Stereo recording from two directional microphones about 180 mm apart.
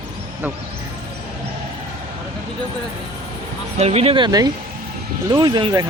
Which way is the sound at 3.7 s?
35° right (ahead or behind).